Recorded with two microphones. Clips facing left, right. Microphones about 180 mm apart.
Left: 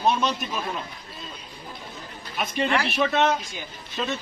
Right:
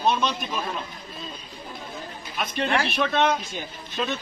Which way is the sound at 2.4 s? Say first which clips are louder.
Left 1 dB; 5° left (ahead or behind).